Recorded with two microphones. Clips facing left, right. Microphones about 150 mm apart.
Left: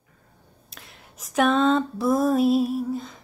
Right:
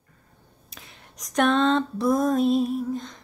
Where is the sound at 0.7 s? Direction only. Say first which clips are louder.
Even; centre (ahead or behind).